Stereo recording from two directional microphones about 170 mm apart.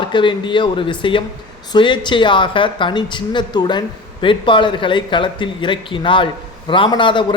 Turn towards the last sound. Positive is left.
turn(degrees=30)  # may be behind; listen again after turning